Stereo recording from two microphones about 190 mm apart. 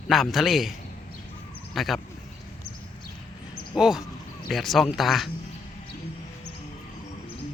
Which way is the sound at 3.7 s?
5° right (ahead or behind).